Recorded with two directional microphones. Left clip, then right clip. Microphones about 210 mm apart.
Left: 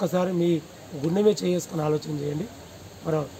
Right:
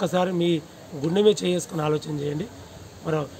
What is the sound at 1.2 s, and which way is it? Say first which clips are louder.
Speech: right 2 dB; 20° right (ahead or behind).